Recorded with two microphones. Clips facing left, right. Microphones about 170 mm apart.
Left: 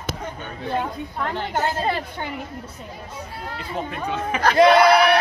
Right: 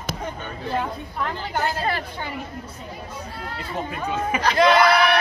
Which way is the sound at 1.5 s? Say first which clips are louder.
Left 1 dB; 25° left (ahead or behind).